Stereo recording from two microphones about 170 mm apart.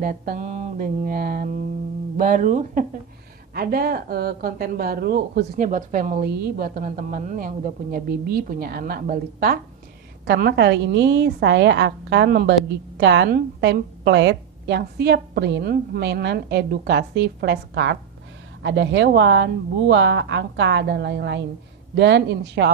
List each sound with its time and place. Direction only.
0.0 s a woman's voice: 55° right (ahead or behind)
3.5 s a woman's voice: 60° right (ahead or behind); by 5.6 s 75° right (ahead or behind)
5.6 s speech: 50° right (ahead or behind)
6.2 s a woman's voice: 65° right (ahead or behind)
10.2 s a woman's voice: 90° right